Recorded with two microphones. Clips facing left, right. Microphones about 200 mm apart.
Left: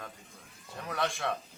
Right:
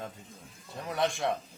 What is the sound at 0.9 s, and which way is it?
Speech, 20° right (ahead or behind).